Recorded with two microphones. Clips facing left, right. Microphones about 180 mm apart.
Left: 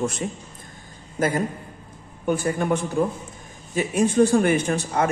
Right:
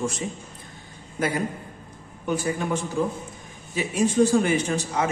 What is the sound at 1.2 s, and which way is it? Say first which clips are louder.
A man's voice: left 3 dB; 45° left (ahead or behind).